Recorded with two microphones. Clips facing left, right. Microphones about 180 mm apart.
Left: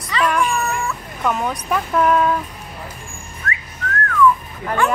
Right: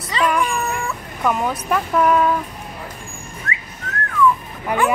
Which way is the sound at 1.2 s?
5° right (ahead or behind).